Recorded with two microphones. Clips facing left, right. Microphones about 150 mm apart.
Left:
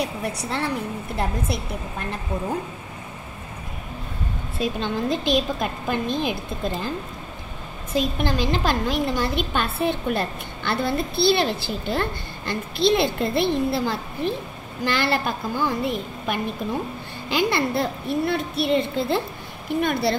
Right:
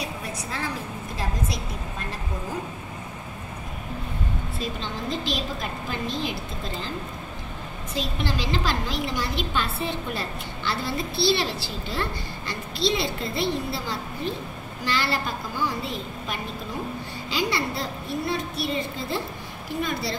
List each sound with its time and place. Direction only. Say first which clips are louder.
0.0 s a woman's voice: left 6 dB; 70° left (ahead or behind)
4.7 s a woman's voice: left 6 dB; 55° left (ahead or behind)
7.9 s a woman's voice: left 6 dB; 50° left (ahead or behind)